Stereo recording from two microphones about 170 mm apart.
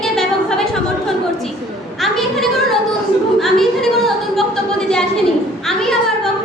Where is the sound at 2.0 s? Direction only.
Centre (ahead or behind).